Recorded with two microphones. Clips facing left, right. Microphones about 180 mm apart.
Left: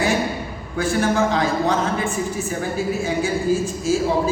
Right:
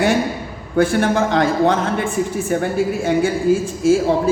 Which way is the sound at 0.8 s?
55° right (ahead or behind).